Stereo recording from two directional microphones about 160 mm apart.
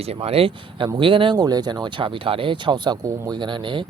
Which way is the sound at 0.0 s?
40° right (ahead or behind).